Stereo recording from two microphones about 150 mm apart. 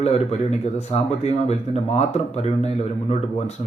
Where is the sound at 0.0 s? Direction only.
45° left (ahead or behind).